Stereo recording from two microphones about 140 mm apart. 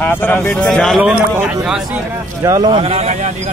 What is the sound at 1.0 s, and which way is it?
A man's voice, 10° right (ahead or behind).